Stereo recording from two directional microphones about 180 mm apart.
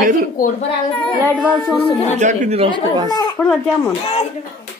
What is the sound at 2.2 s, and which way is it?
Speech, 40° right (ahead or behind).